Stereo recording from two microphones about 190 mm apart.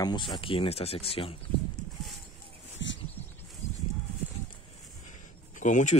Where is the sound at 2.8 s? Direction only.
75° left (ahead or behind).